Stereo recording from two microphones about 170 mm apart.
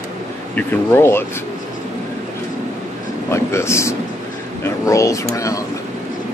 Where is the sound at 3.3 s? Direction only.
15° left (ahead or behind).